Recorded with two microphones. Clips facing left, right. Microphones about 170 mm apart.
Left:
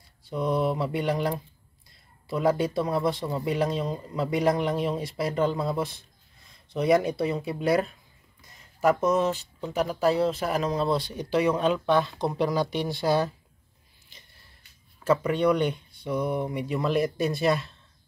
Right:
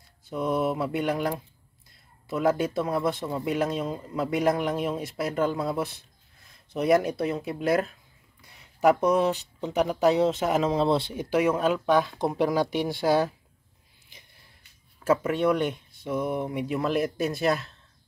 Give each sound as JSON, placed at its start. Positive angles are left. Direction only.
{"t": 0.3, "sound": "mantra", "side_deg": -5}
{"t": 2.2, "sound": "speech", "side_deg": -5}
{"t": 8.5, "sound": "speech", "side_deg": -10}
{"t": 11.1, "sound": "speech", "side_deg": -10}
{"t": 15.0, "sound": "speech", "side_deg": -5}